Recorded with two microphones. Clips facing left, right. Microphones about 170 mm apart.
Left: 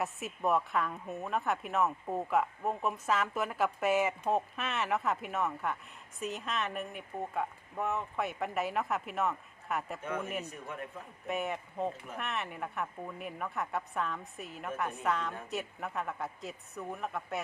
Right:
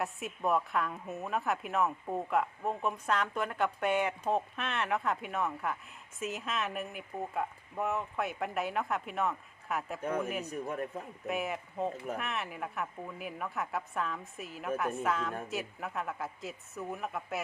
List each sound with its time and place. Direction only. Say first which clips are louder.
0.0 s speech: even; centre (ahead or behind)
10.4 s speech: right 6 dB; 40° right (ahead or behind)
11.3 s speech: even; centre (ahead or behind)